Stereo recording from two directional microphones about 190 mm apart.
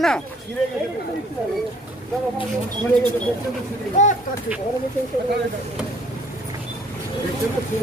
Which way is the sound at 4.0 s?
35° left (ahead or behind).